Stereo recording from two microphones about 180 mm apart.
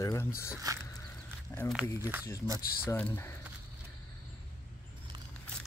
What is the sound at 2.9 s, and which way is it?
Speech, 15° left (ahead or behind).